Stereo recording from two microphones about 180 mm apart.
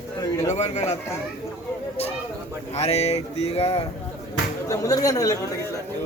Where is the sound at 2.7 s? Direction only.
35° left (ahead or behind).